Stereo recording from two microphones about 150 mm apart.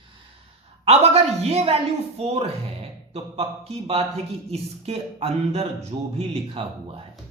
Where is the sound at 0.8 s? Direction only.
45° right (ahead or behind).